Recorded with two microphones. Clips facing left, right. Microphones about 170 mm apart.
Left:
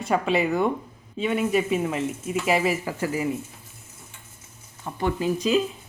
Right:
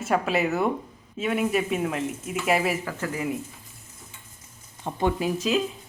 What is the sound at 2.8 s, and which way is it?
Speech, 10° left (ahead or behind).